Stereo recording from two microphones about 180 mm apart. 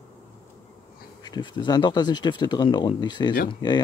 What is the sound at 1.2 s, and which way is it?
Speech, 25° left (ahead or behind).